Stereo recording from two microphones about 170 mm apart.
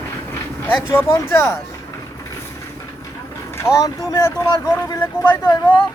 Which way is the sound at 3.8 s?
20° left (ahead or behind).